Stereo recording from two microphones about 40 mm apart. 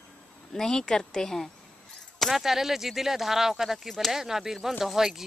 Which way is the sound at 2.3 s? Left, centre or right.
Centre.